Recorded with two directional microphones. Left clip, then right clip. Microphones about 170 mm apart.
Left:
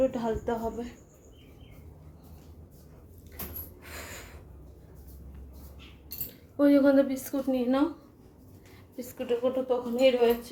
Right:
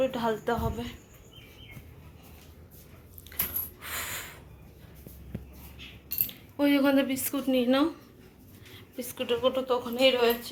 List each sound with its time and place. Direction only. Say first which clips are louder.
0.0 s a woman's voice: even; 5° left (ahead or behind)
3.3 s a sound: right 6 dB; 5° left (ahead or behind)
6.6 s speech: left 3 dB; 25° left (ahead or behind)
7.3 s a woman's voice: right 2 dB; 15° left (ahead or behind)
9.0 s a woman's voice: right 1 dB; 5° left (ahead or behind)